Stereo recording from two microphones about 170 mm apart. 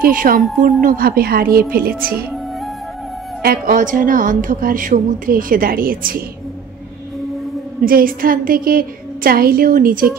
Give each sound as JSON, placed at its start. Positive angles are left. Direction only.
{"t": 0.0, "sound": "a woman's voice", "side_deg": -55}
{"t": 3.4, "sound": "a woman's voice", "side_deg": -55}
{"t": 7.8, "sound": "a woman's voice", "side_deg": -55}